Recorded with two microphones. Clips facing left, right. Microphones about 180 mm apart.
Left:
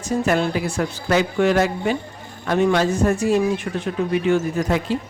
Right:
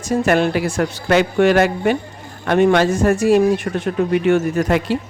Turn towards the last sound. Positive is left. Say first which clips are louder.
# right 4 dB
turn(degrees=-70)  # may be behind; listen again after turning